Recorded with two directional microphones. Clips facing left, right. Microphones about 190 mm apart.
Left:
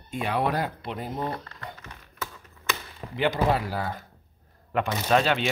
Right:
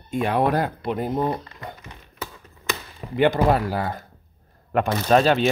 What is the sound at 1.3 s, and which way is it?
Crumpling, 15° right (ahead or behind).